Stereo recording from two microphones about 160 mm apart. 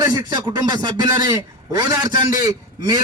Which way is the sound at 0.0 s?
25° right (ahead or behind).